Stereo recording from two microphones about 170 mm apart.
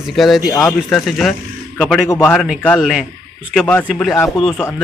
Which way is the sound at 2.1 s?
15° left (ahead or behind).